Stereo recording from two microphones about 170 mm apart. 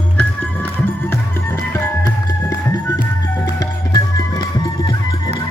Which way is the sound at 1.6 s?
15° left (ahead or behind).